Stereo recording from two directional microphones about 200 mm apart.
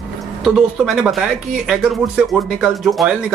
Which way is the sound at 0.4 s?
Centre (ahead or behind).